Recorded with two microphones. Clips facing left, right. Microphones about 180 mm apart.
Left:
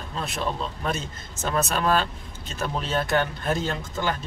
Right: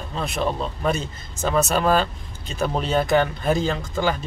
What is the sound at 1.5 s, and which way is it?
Speech, 5° right (ahead or behind).